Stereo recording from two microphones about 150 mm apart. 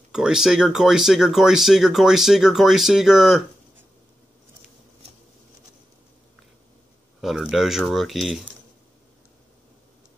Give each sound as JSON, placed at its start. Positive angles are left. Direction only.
{"t": 0.1, "sound": "speech", "side_deg": -5}
{"t": 7.2, "sound": "speech", "side_deg": 0}